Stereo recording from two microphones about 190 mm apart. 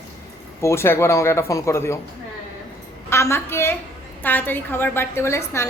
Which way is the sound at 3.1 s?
15° left (ahead or behind).